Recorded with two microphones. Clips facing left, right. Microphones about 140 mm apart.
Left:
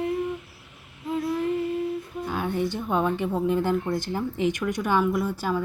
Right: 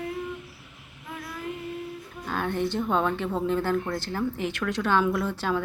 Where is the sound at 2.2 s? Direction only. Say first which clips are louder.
Even; 10° left (ahead or behind).